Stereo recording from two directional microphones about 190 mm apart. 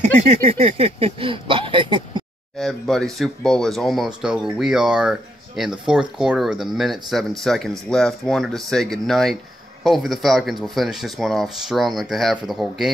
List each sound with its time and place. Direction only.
0.0 s speech: 35° right (ahead or behind)
2.6 s speech: centre (ahead or behind)